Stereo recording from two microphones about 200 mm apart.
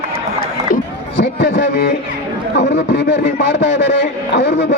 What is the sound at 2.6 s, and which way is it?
A man's voice, 60° left (ahead or behind).